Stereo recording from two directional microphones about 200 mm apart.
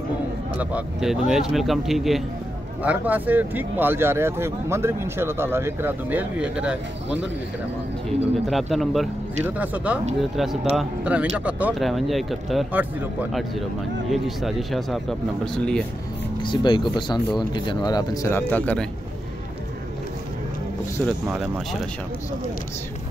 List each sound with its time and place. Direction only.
0.6 s speech: 5° right (ahead or behind)
8.5 s speech: centre (ahead or behind)
16.4 s speech: 25° left (ahead or behind); by 18.9 s 5° left (ahead or behind)
21.3 s speech: 5° right (ahead or behind)